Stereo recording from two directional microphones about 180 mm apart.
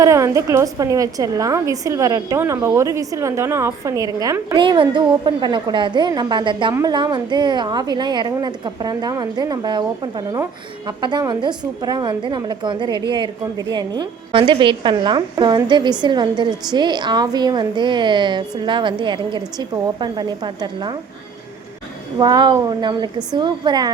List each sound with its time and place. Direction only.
0.0 s a woman's voice: 15° right (ahead or behind)
22.2 s a woman's voice: 25° right (ahead or behind)